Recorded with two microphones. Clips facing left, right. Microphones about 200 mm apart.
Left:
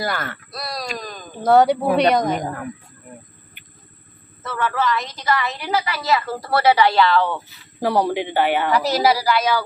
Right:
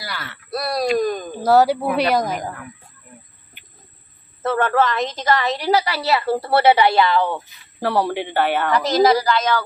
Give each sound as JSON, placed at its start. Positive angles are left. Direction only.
{"t": 0.0, "sound": "speech", "side_deg": 50}
{"t": 0.5, "sound": "speech", "side_deg": -60}
{"t": 1.4, "sound": "a woman's voice", "side_deg": -5}
{"t": 4.4, "sound": "a woman's voice", "side_deg": -55}
{"t": 7.8, "sound": "a woman's voice", "side_deg": 15}